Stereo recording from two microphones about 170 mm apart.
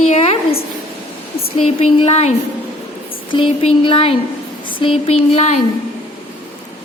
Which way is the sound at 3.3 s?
35° left (ahead or behind).